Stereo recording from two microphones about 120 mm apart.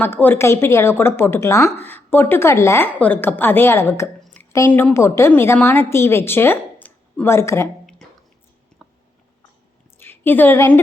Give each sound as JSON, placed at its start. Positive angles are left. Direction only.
{"t": 0.0, "sound": "a woman's voice", "side_deg": 15}
{"t": 4.4, "sound": "a sound", "side_deg": 15}
{"t": 4.7, "sound": "a woman's voice", "side_deg": 15}
{"t": 10.0, "sound": "a woman's voice", "side_deg": 15}